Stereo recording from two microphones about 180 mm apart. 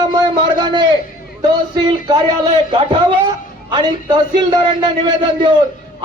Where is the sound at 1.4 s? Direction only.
25° right (ahead or behind).